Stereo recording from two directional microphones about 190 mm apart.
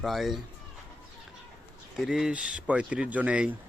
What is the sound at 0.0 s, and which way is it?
Speech, centre (ahead or behind).